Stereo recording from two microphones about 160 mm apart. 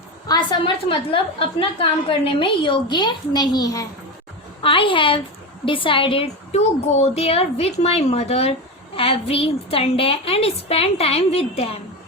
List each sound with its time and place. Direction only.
0.3 s a woman's voice: 30° left (ahead or behind)
4.6 s a woman's voice: 35° left (ahead or behind)